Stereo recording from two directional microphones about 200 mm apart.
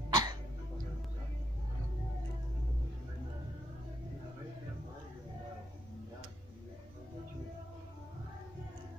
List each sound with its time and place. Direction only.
0.1 s cough: 20° right (ahead or behind)